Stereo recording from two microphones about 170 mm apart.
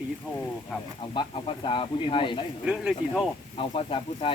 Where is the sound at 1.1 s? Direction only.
30° left (ahead or behind).